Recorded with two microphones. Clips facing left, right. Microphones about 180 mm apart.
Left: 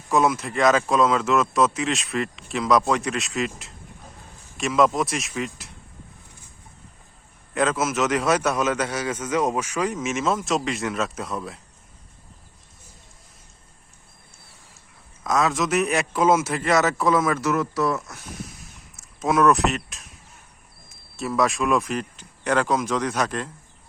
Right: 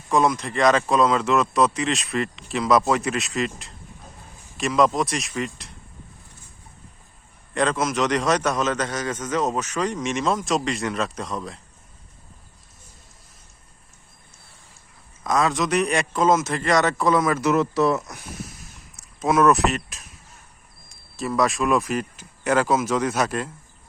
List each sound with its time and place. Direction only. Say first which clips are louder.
0.1 s a man's voice: even; 5° left (ahead or behind)
7.5 s a man's voice: even; 5° left (ahead or behind)
15.2 s a man's voice: even; centre (ahead or behind)
17.4 s speech: right 3 dB; 25° right (ahead or behind)
18.9 s speech: right 1 dB; centre (ahead or behind)